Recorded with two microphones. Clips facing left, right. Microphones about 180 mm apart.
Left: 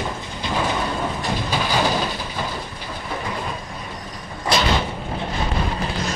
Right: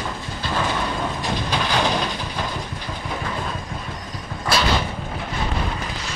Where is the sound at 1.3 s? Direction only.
10° left (ahead or behind).